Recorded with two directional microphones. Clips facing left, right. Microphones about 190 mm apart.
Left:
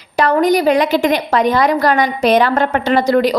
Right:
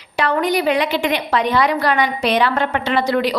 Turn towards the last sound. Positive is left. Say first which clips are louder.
# left 5 dB
turn(degrees=45)  # may be behind; listen again after turning